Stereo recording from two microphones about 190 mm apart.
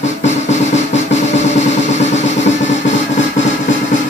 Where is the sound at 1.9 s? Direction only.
35° left (ahead or behind).